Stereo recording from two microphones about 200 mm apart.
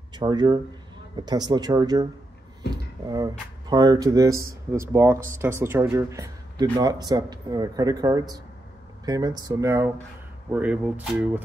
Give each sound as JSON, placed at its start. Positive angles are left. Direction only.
{"t": 0.1, "sound": "speech", "side_deg": -20}
{"t": 2.6, "sound": "a sound", "side_deg": 55}
{"t": 3.1, "sound": "speech", "side_deg": -20}